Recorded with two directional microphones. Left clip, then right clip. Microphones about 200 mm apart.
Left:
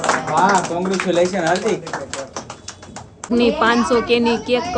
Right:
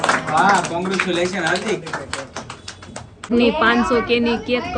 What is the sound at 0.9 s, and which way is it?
Speech, 50° left (ahead or behind).